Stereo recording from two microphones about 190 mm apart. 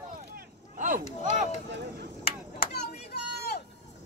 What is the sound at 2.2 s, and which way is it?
Chop, 55° left (ahead or behind).